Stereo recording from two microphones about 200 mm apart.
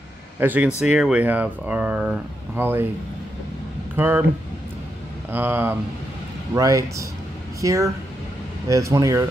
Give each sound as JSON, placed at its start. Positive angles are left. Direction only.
{"t": 0.4, "sound": "speech", "side_deg": -10}
{"t": 3.9, "sound": "speech", "side_deg": -10}
{"t": 5.3, "sound": "speech", "side_deg": -10}